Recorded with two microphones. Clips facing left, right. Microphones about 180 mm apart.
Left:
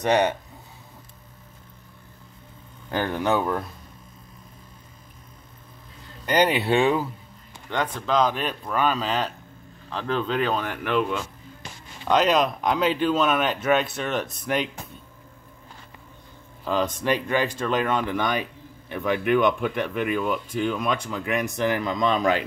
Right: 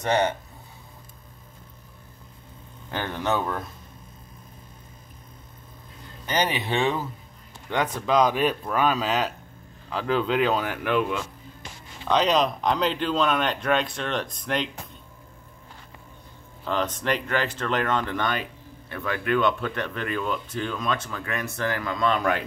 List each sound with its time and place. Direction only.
0.0 s speech: 15° left (ahead or behind)
2.9 s speech: 15° left (ahead or behind)
6.2 s speech: 10° left (ahead or behind)
7.7 s speech: 10° right (ahead or behind); by 14.7 s 5° left (ahead or behind)
16.6 s speech: 10° left (ahead or behind)